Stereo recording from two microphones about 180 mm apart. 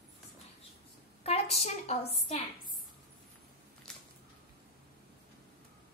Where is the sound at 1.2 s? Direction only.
35° left (ahead or behind).